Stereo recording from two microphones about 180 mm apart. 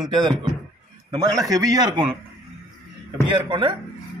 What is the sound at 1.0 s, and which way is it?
A man's voice, 20° right (ahead or behind).